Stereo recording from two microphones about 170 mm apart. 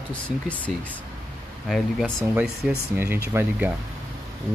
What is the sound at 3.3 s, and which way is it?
Speech, 15° right (ahead or behind).